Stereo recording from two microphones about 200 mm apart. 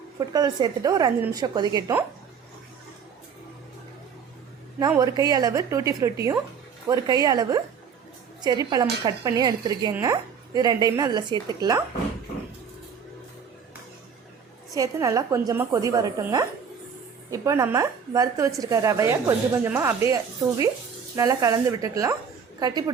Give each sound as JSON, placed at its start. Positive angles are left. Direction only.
{"t": 0.2, "sound": "speech", "side_deg": -20}
{"t": 4.9, "sound": "a woman's voice", "side_deg": -20}
{"t": 14.7, "sound": "a woman's voice", "side_deg": -15}